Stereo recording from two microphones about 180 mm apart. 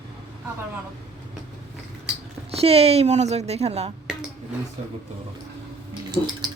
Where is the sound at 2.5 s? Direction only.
35° right (ahead or behind).